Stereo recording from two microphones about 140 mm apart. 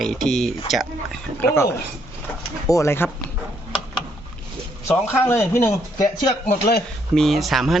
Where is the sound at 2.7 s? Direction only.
20° left (ahead or behind).